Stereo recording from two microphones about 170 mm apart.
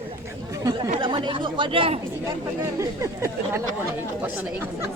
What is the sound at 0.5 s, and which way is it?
Speech, 20° right (ahead or behind).